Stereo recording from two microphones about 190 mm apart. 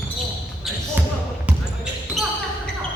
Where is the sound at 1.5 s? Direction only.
5° right (ahead or behind).